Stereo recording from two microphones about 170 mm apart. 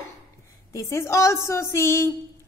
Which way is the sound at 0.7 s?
15° left (ahead or behind).